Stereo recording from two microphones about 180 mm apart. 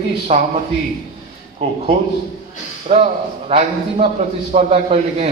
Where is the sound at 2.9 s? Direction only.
35° right (ahead or behind).